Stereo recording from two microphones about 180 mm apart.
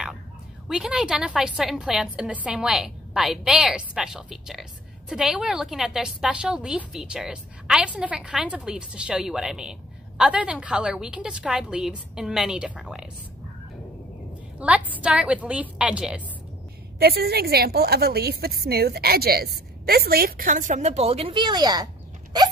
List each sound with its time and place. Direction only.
0.7 s a woman's voice: 5° right (ahead or behind)
14.6 s a woman's voice: 5° right (ahead or behind)
17.0 s a woman's voice: 60° right (ahead or behind); by 21.8 s 20° right (ahead or behind)